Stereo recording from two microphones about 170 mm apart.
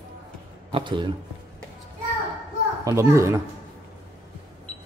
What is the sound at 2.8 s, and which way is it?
Speech, 15° right (ahead or behind).